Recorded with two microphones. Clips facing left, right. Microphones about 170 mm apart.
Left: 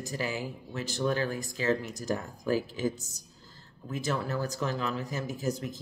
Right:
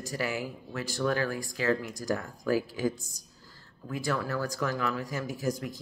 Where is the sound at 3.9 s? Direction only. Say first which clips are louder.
Right 1 dB; 20° left (ahead or behind).